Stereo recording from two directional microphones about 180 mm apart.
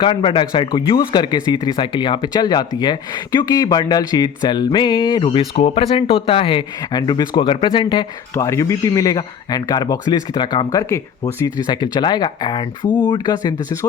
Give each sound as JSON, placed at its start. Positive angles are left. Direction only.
{"t": 0.0, "sound": "speech", "side_deg": 30}